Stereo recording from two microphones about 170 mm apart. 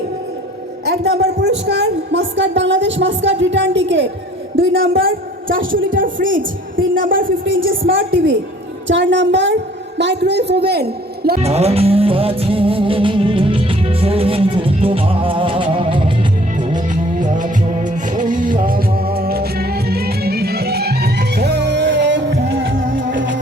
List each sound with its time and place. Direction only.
0.9 s a woman's voice: 70° right (ahead or behind); by 4.0 s 90° right
4.5 s speech: 60° right (ahead or behind)
8.9 s a woman's voice: 90° right; by 11.3 s 70° right (ahead or behind)
11.3 s music: 35° right (ahead or behind)
16.9 s music: 50° right (ahead or behind); by 22.7 s 85° right